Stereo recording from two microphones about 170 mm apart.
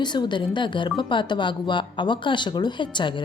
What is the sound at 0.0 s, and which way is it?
Speech, 25° left (ahead or behind).